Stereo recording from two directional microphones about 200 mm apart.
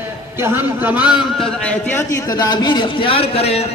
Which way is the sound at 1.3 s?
5° left (ahead or behind).